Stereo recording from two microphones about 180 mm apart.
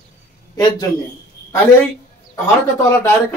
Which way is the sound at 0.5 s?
20° left (ahead or behind).